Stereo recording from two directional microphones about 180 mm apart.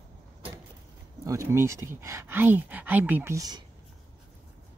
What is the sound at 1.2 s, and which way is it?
Speech, 15° right (ahead or behind).